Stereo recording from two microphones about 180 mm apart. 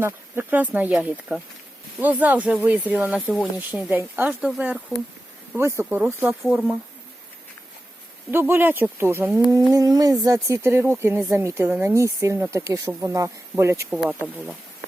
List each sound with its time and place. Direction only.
0.0 s speech: 10° right (ahead or behind)
5.5 s speech: 15° right (ahead or behind)
6.4 s speech: centre (ahead or behind)
8.3 s speech: 10° right (ahead or behind)
13.9 s speech: centre (ahead or behind)